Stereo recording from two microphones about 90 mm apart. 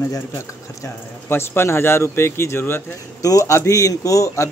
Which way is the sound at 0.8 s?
25° left (ahead or behind).